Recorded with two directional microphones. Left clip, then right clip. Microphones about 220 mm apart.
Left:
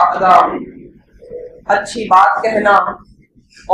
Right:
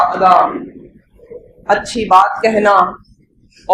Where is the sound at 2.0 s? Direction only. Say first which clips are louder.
Even; 50° right (ahead or behind).